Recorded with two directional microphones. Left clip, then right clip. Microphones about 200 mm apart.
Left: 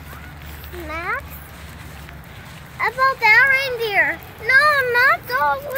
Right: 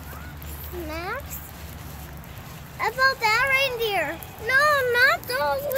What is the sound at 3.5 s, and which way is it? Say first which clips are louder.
Speech: left 2 dB; 50° right (ahead or behind).